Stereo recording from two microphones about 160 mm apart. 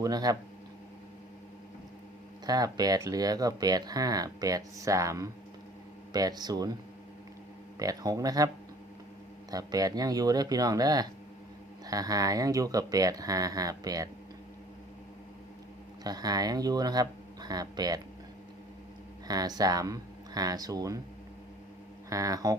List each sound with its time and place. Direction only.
0.0 s speech: 25° right (ahead or behind)
2.5 s speech: 25° right (ahead or behind)
7.8 s speech: 25° right (ahead or behind)
9.5 s speech: 25° right (ahead or behind)
16.0 s speech: 25° right (ahead or behind)
19.3 s speech: 25° right (ahead or behind)
22.1 s speech: 20° right (ahead or behind)